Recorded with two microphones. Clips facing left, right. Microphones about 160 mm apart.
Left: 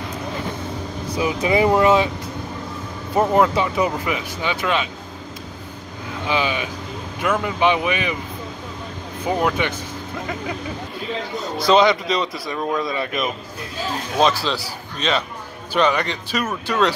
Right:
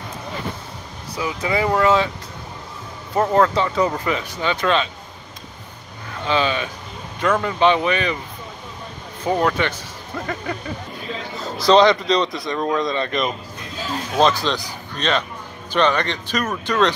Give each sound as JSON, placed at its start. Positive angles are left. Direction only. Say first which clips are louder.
{"t": 1.1, "sound": "speech", "louder": "left 4 dB", "side_deg": 20}
{"t": 3.2, "sound": "speech", "louder": "even", "side_deg": 15}
{"t": 6.2, "sound": "speech", "louder": "right 2 dB", "side_deg": 15}
{"t": 9.2, "sound": "speech", "louder": "right 1 dB", "side_deg": 10}
{"t": 11.4, "sound": "speech", "louder": "right 2 dB", "side_deg": 0}